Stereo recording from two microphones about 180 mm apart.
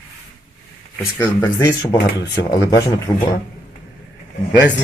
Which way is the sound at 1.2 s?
15° left (ahead or behind).